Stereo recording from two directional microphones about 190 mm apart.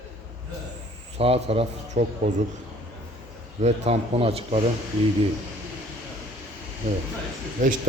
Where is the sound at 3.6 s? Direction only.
35° right (ahead or behind).